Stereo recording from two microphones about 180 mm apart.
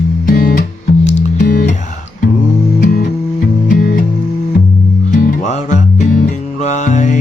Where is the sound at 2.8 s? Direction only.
50° left (ahead or behind).